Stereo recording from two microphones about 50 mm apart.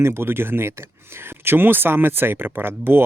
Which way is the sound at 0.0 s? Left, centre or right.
Right.